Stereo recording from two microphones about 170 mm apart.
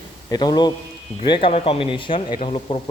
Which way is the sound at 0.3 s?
25° left (ahead or behind).